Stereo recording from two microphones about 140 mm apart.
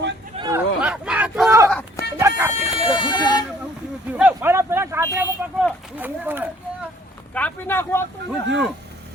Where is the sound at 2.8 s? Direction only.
35° left (ahead or behind).